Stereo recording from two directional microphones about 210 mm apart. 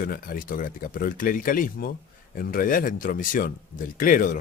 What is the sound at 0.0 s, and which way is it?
Speech, 40° left (ahead or behind).